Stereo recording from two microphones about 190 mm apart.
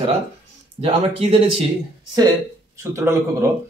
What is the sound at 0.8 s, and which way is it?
Speech, 30° right (ahead or behind).